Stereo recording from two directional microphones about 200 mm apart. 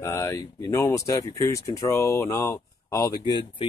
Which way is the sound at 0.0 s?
15° left (ahead or behind).